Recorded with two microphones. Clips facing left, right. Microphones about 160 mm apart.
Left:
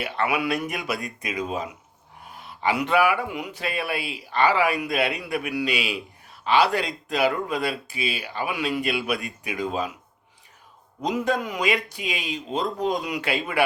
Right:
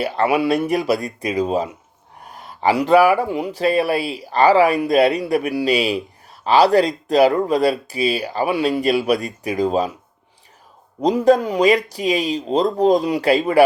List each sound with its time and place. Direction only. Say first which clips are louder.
0.0 s speech: right 7 dB; 35° right (ahead or behind)
11.0 s speech: right 10 dB; 35° right (ahead or behind)